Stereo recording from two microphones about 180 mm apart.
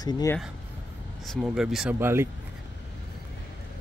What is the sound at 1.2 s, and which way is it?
Speech, centre (ahead or behind).